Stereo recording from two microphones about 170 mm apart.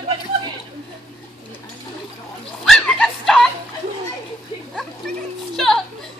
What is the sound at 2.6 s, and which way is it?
Dog, centre (ahead or behind).